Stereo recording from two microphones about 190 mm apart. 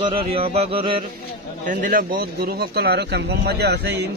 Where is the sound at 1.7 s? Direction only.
45° right (ahead or behind).